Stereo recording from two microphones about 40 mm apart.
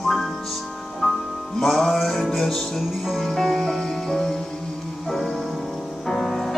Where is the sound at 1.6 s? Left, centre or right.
Centre.